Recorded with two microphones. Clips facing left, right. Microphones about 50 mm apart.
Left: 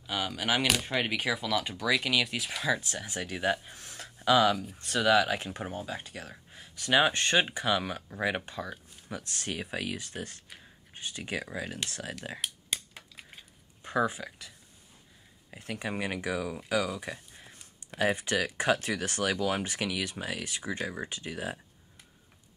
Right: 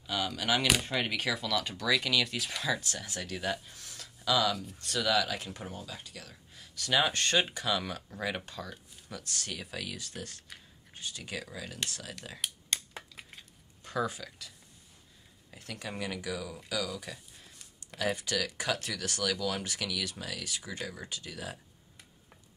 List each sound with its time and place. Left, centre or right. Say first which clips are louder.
0.0 s speech: left 1 dB; centre; by 12.2 s left
12.4 s a sound: left 1 dB; centre
13.8 s speech: left 4 dB; left
15.5 s speech: left 5 dB; left